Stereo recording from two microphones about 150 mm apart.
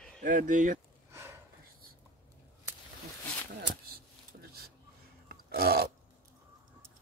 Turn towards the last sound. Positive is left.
turn(degrees=-90)